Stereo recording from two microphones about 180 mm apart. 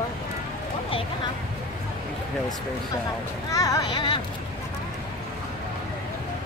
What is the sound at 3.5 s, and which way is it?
Speech, 20° left (ahead or behind).